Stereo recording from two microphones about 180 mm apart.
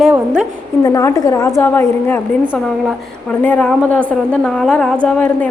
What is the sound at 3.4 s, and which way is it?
A woman's voice, 10° left (ahead or behind).